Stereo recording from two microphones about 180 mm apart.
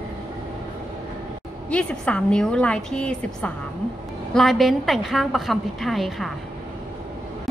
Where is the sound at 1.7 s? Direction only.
5° left (ahead or behind).